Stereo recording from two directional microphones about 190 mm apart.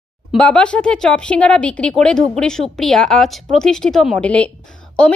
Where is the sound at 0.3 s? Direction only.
5° left (ahead or behind).